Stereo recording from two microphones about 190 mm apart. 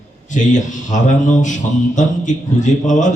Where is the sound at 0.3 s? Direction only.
40° left (ahead or behind).